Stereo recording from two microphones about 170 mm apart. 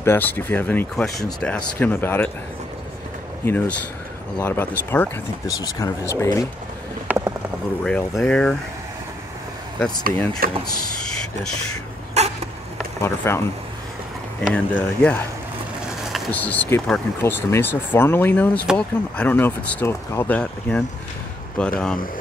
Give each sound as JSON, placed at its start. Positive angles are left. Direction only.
{"t": 0.0, "sound": "speech", "side_deg": 10}
{"t": 3.4, "sound": "speech", "side_deg": 10}
{"t": 7.1, "sound": "a sound", "side_deg": -10}
{"t": 7.8, "sound": "speech", "side_deg": 5}
{"t": 10.4, "sound": "speech", "side_deg": -60}
{"t": 12.2, "sound": "a sound", "side_deg": -40}
{"t": 13.0, "sound": "speech", "side_deg": 15}
{"t": 14.5, "sound": "speech", "side_deg": 10}
{"t": 16.3, "sound": "speech", "side_deg": 10}